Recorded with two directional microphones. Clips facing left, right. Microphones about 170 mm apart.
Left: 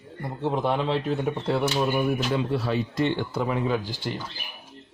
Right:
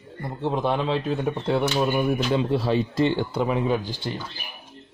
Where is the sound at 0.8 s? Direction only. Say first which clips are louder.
Right 1 dB; 15° right (ahead or behind).